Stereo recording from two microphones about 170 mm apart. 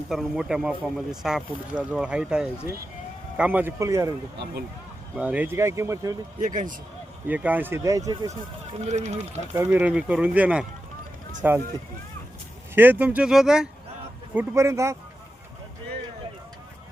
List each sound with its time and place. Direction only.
0.1 s speech: 5° right (ahead or behind); by 4.1 s 20° right (ahead or behind)
5.1 s speech: 10° right (ahead or behind)
6.4 s speech: 50° right (ahead or behind)
7.3 s speech: 10° right (ahead or behind)
8.8 s speech: 40° right (ahead or behind)
9.5 s speech: 15° right (ahead or behind)
12.7 s speech: 10° right (ahead or behind)
14.3 s speech: 15° right (ahead or behind)